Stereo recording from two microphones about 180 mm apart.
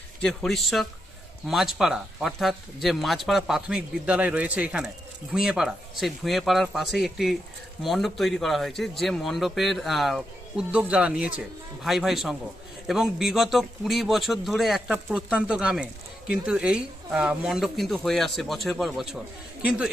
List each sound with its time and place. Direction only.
0.2 s a man's voice: centre (ahead or behind)